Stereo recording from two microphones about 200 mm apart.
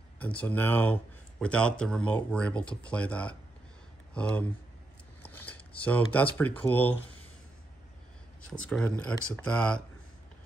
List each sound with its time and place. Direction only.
0.2 s speech: 5° left (ahead or behind)
8.5 s speech: 5° left (ahead or behind)